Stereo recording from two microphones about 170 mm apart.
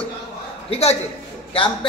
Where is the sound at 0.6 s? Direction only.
40° left (ahead or behind).